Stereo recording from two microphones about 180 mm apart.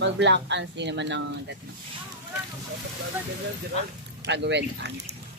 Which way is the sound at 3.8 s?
35° left (ahead or behind).